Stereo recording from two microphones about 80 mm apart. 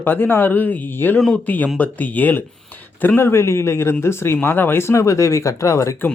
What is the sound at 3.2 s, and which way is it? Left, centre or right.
Speech, left.